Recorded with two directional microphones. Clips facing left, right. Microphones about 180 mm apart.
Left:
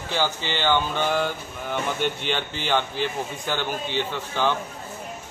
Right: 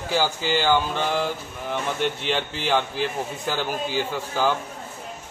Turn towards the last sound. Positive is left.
turn(degrees=-5)  # may be behind; listen again after turning